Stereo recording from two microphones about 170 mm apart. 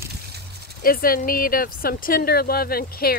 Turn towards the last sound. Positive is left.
turn(degrees=60)  # may be behind; listen again after turning